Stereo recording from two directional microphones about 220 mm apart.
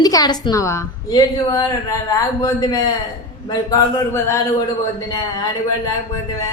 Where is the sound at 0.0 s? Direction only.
15° left (ahead or behind).